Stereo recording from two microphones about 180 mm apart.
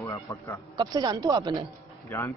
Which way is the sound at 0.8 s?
20° right (ahead or behind).